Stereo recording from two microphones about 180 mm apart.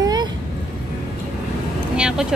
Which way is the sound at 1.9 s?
5° right (ahead or behind).